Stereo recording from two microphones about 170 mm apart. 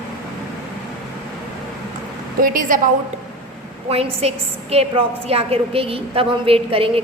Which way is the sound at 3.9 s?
35° right (ahead or behind).